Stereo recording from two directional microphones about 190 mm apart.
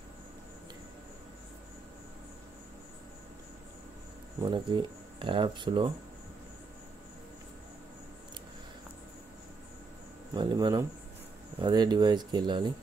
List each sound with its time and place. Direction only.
4.4 s speech: 25° right (ahead or behind)
10.3 s speech: 25° right (ahead or behind)